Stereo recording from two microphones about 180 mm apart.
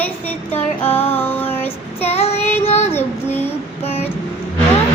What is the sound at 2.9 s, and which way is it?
Child singing, 10° left (ahead or behind).